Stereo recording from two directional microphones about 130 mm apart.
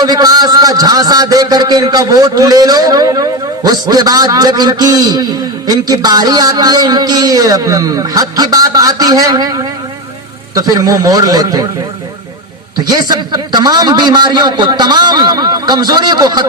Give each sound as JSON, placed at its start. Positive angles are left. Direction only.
{"t": 0.0, "sound": "a man's voice", "side_deg": -30}
{"t": 12.9, "sound": "a man's voice", "side_deg": -30}